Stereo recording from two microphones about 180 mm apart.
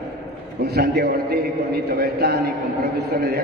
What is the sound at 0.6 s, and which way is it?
A man's voice, 65° right (ahead or behind).